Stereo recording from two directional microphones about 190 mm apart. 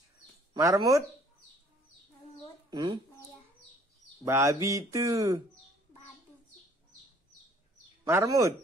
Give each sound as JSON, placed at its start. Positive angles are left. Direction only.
{"t": 0.6, "sound": "speech", "side_deg": -15}
{"t": 2.7, "sound": "speech", "side_deg": -20}
{"t": 4.2, "sound": "speech", "side_deg": -15}
{"t": 8.0, "sound": "speech", "side_deg": -15}